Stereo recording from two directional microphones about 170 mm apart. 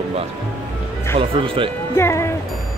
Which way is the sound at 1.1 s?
30° right (ahead or behind).